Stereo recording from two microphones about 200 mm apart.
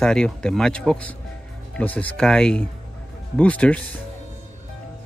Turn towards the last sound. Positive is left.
turn(degrees=5)  # may be behind; listen again after turning